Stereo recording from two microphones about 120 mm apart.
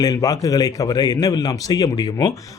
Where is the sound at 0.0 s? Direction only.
30° left (ahead or behind).